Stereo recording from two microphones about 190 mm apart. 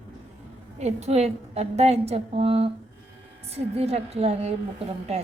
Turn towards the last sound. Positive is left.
turn(degrees=-30)  # may be behind; listen again after turning